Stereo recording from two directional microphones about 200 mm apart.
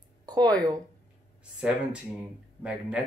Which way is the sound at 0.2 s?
20° right (ahead or behind).